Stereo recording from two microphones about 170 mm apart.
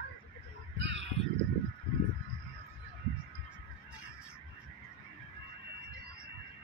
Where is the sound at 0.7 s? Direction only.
90° right.